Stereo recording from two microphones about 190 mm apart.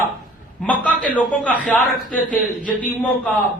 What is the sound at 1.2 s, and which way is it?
A man's voice, 10° left (ahead or behind).